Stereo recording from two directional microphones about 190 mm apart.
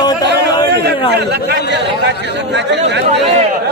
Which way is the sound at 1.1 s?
65° right (ahead or behind).